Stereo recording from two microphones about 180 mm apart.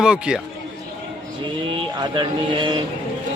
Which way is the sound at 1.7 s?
25° right (ahead or behind).